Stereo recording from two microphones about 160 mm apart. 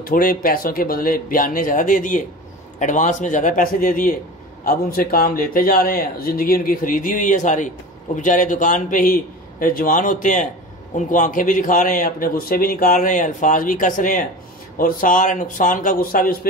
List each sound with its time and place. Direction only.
0.0 s a man's voice: 60° left (ahead or behind)